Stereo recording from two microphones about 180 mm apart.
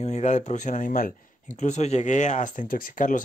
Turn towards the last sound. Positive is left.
turn(degrees=45)  # may be behind; listen again after turning